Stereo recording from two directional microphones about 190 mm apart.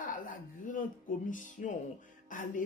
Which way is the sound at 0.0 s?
45° left (ahead or behind).